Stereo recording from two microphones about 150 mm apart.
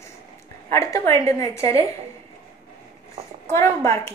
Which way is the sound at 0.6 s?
20° left (ahead or behind).